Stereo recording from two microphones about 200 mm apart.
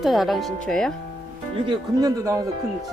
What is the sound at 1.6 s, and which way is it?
Speech, 15° right (ahead or behind).